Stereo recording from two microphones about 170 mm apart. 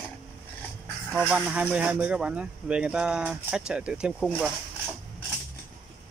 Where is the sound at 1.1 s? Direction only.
5° right (ahead or behind).